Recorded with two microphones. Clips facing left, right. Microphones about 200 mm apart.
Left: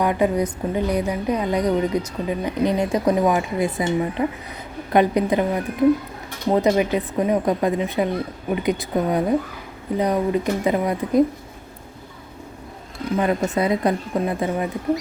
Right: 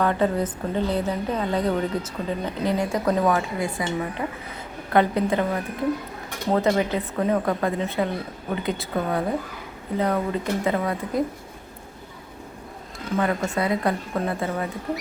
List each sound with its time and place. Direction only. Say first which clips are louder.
0.0 s a woman's voice: left 2 dB; 15° left (ahead or behind)
6.5 s a woman's voice: left 3 dB; 15° left (ahead or behind)
13.1 s speech: left 3 dB; 20° left (ahead or behind)